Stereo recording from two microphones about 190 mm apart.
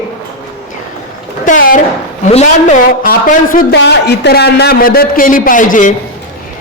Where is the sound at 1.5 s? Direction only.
45° left (ahead or behind).